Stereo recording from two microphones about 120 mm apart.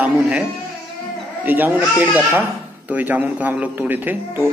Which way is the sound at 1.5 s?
15° right (ahead or behind).